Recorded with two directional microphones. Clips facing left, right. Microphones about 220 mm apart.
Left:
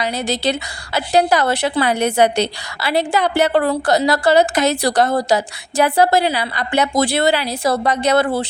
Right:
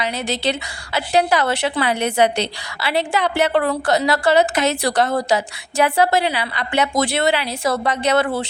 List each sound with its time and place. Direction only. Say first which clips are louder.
0.0 s a woman's voice: left 2 dB; 40° left (ahead or behind)